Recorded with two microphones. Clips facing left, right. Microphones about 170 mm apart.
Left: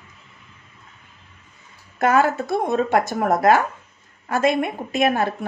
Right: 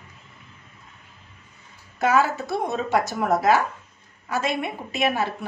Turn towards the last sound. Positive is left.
turn(degrees=50)  # may be behind; listen again after turning